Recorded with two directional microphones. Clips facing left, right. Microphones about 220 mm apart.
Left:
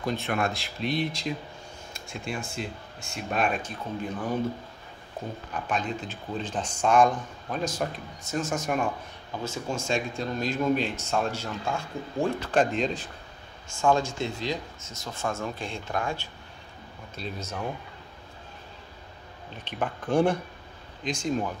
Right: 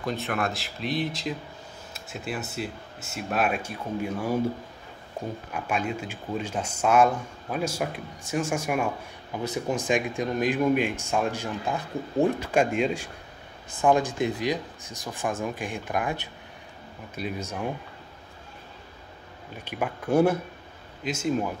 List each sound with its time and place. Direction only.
0.0 s speech: centre (ahead or behind)
5.2 s a sound: 15° right (ahead or behind)
5.5 s speech: 10° right (ahead or behind)
19.5 s speech: 10° right (ahead or behind)